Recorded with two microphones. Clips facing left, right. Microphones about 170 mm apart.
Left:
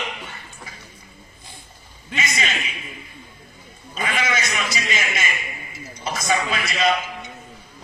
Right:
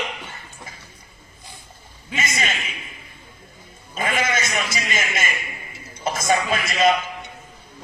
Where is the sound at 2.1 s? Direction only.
50° right (ahead or behind).